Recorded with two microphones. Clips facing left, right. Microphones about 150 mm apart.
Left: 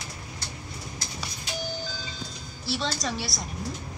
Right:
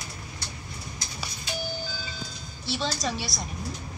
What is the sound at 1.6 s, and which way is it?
Ice cream truck, 10° right (ahead or behind).